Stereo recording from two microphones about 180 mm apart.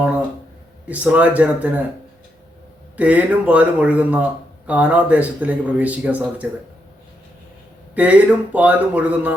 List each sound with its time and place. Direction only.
0.9 s speech: 10° right (ahead or behind)
3.0 s speech: 10° right (ahead or behind)
7.9 s speech: 10° right (ahead or behind)